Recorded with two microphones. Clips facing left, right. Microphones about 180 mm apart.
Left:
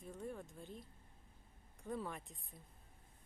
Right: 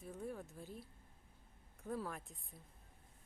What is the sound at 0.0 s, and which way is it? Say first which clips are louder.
Speech: right 1 dB; 5° right (ahead or behind).